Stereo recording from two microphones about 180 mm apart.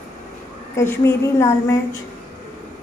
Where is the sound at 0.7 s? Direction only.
15° left (ahead or behind).